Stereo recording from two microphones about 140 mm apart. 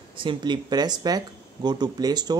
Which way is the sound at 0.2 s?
35° right (ahead or behind).